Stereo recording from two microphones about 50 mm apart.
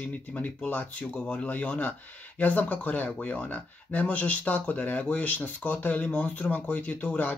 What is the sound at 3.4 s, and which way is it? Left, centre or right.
Speech, left.